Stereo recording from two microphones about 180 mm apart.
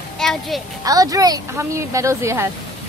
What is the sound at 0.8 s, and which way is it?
Speech, 20° right (ahead or behind).